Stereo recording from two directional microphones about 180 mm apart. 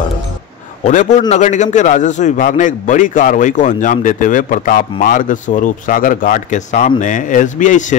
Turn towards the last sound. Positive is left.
turn(degrees=45)  # may be behind; listen again after turning